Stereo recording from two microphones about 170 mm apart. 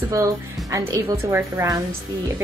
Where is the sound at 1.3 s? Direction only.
15° right (ahead or behind).